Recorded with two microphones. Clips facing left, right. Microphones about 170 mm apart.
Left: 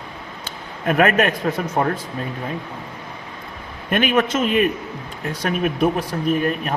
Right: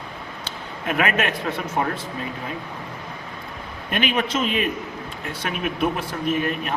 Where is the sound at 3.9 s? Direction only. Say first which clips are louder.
Left 5 dB; 50° left (ahead or behind).